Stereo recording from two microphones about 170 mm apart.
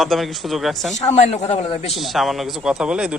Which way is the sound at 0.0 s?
Centre (ahead or behind).